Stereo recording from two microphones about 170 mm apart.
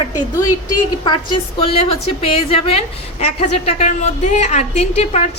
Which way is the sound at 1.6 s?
35° left (ahead or behind).